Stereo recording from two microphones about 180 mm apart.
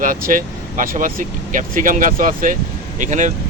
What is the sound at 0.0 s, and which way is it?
Speech, 50° right (ahead or behind).